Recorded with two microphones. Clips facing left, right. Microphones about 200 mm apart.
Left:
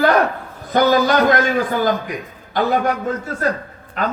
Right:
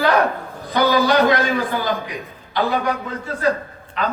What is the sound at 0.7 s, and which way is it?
A man's voice, 45° left (ahead or behind).